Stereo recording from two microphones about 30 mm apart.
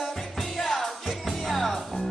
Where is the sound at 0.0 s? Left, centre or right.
Centre.